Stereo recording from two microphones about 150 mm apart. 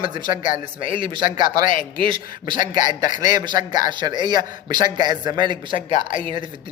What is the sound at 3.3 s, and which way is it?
A man's voice, 25° right (ahead or behind).